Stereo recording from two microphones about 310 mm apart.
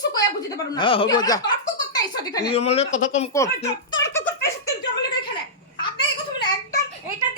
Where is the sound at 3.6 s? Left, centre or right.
Centre.